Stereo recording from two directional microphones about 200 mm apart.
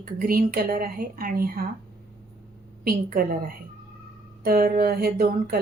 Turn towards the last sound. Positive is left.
turn(degrees=-50)  # may be behind; listen again after turning